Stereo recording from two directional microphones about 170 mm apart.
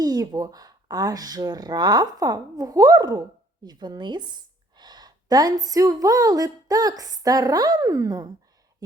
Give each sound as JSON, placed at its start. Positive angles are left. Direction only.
{"t": 0.0, "sound": "speech", "side_deg": -20}